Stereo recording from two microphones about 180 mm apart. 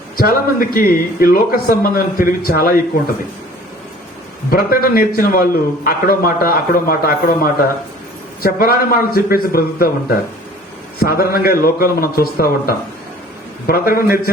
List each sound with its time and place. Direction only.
0.2 s speech: 55° left (ahead or behind)
4.5 s speech: 55° left (ahead or behind)
8.4 s speech: 55° left (ahead or behind)